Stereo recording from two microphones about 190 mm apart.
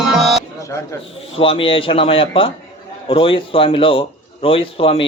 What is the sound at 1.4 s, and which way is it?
Speech, 30° left (ahead or behind).